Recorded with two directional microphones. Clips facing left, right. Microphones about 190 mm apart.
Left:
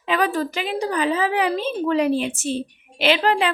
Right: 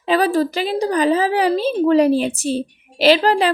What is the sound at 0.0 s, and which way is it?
A woman's voice, 35° right (ahead or behind).